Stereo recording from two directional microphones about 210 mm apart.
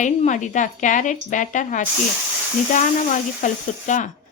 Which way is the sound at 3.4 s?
35° left (ahead or behind).